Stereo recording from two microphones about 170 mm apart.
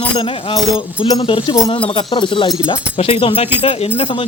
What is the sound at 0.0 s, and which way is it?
Speech, 30° left (ahead or behind).